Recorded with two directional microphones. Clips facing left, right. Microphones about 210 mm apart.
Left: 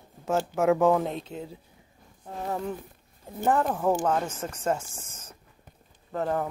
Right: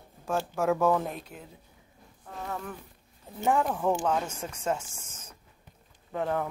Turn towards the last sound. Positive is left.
turn(degrees=0)  # may be behind; listen again after turning